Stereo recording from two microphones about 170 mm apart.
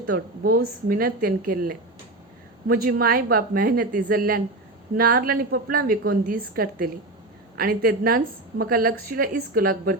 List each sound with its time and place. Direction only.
0.1 s a woman's voice: 60° right (ahead or behind)